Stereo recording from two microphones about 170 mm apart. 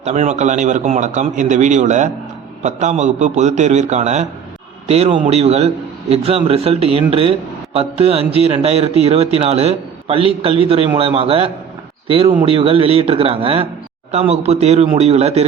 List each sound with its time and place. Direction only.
0.0 s a man's voice: 45° right (ahead or behind)